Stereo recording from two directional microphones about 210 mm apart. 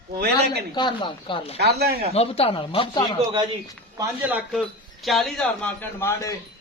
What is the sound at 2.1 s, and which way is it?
Speech, 30° left (ahead or behind).